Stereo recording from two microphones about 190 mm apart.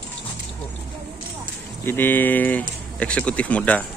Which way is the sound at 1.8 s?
10° left (ahead or behind).